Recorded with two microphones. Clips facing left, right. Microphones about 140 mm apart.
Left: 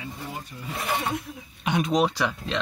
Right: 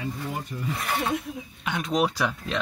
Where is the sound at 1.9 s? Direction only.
5° right (ahead or behind).